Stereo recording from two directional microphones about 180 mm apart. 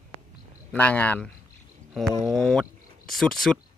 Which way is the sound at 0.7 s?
10° left (ahead or behind).